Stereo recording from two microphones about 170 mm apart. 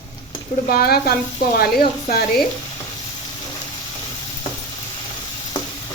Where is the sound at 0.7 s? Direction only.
65° left (ahead or behind).